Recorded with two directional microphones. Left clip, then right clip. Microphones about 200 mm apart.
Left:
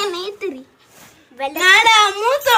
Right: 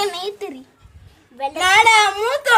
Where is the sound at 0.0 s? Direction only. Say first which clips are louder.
Left 1 dB; 60° right (ahead or behind).